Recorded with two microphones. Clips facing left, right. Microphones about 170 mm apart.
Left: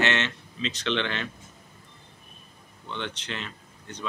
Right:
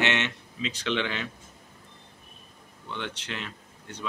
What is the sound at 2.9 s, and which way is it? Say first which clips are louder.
Speech: left 1 dB; 10° right (ahead or behind).